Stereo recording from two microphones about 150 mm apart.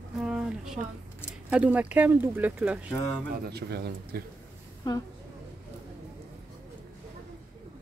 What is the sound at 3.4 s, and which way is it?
Speech, 90° right.